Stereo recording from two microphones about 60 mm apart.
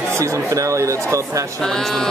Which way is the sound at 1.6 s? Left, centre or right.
Centre.